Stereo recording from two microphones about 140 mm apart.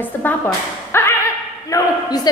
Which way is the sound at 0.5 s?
20° left (ahead or behind).